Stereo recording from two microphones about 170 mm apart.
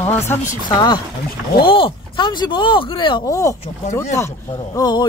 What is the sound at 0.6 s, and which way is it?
Speech, 25° left (ahead or behind).